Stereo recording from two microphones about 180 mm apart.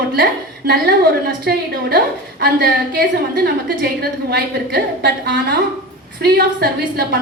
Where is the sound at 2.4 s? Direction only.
55° right (ahead or behind).